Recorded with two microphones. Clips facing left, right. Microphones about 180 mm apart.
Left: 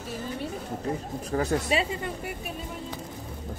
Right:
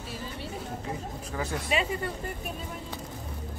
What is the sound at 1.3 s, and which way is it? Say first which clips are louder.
Speech: left 5 dB; 40° left (ahead or behind).